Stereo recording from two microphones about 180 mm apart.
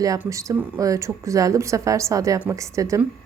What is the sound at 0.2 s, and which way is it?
A woman's voice, 15° right (ahead or behind).